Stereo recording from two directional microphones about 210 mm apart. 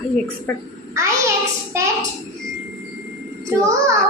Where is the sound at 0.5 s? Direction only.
10° left (ahead or behind).